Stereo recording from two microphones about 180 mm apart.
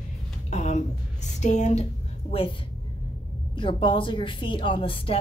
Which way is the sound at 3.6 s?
30° left (ahead or behind).